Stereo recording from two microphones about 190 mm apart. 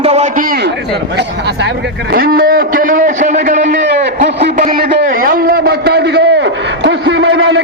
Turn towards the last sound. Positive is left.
turn(degrees=-75)  # may be behind; listen again after turning